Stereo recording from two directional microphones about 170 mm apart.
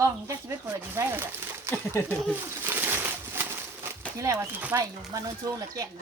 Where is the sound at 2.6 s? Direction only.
10° right (ahead or behind).